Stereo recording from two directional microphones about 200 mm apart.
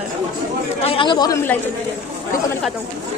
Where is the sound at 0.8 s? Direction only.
25° left (ahead or behind).